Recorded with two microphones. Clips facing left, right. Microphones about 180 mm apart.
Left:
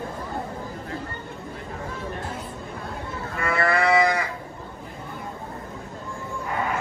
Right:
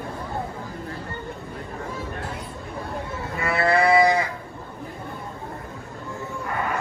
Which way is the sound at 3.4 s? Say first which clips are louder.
Right 2 dB; 25° right (ahead or behind).